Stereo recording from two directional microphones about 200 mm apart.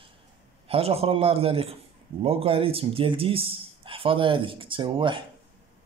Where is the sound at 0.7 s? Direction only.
30° right (ahead or behind).